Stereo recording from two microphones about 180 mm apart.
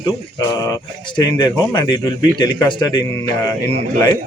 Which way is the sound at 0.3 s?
20° left (ahead or behind).